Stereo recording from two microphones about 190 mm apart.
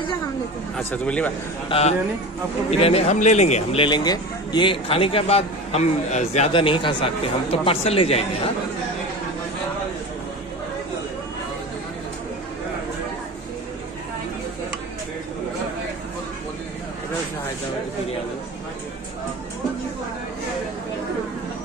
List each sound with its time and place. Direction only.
0.7 s speech: 5° left (ahead or behind)
1.7 s a man's voice: 35° left (ahead or behind)